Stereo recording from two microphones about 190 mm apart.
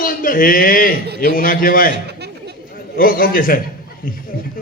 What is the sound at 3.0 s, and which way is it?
Speech, 50° left (ahead or behind).